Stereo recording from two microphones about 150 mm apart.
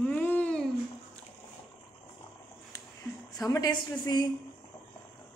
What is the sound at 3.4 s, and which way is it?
Speech, 25° left (ahead or behind).